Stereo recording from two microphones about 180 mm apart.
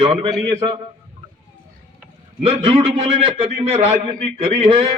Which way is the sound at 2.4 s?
30° right (ahead or behind).